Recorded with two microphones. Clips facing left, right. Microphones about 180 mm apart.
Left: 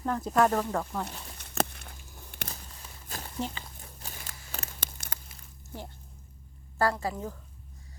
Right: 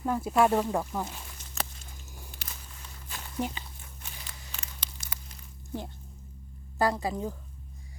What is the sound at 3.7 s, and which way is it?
Tearing, 40° left (ahead or behind).